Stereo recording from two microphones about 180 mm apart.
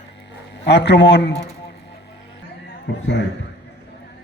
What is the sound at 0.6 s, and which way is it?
Speech, 70° left (ahead or behind).